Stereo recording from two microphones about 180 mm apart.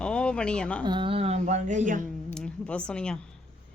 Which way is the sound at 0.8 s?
25° right (ahead or behind).